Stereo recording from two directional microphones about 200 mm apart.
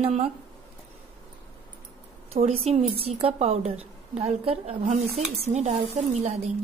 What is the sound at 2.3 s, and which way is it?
A woman's voice, 30° right (ahead or behind).